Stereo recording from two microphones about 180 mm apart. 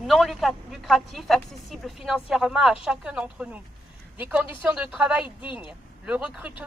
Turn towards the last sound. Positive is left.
turn(degrees=-10)  # may be behind; listen again after turning